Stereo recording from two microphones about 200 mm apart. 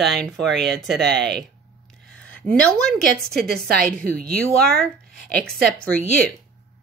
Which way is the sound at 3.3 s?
50° right (ahead or behind).